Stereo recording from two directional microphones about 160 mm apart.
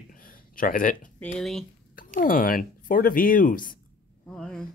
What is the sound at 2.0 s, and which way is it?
Speech, 60° left (ahead or behind).